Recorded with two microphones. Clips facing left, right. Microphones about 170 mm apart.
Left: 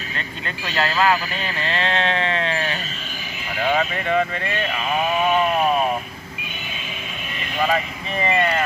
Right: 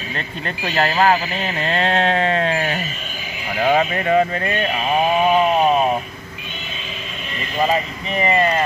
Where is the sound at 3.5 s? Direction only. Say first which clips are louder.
Right 4 dB; 45° right (ahead or behind).